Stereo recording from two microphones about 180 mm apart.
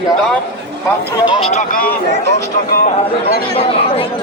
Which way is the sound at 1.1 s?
30° left (ahead or behind).